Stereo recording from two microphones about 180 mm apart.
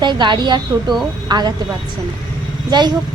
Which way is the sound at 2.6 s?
25° right (ahead or behind).